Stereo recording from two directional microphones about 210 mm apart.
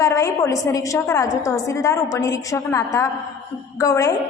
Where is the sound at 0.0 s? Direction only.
15° left (ahead or behind).